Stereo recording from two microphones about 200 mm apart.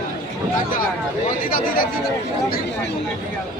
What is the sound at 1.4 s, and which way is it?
Speech, 45° left (ahead or behind).